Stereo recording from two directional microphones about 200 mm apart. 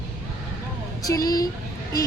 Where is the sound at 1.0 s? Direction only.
20° left (ahead or behind).